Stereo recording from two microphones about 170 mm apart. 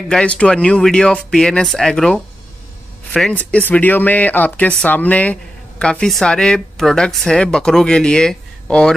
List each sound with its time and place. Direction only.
0.1 s speech: 5° left (ahead or behind)